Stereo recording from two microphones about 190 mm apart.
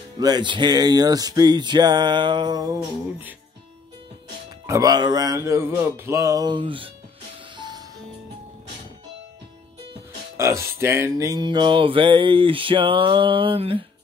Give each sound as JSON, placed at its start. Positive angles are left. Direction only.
{"t": 0.2, "sound": "music", "side_deg": -25}
{"t": 4.6, "sound": "music", "side_deg": -20}
{"t": 10.3, "sound": "music", "side_deg": -15}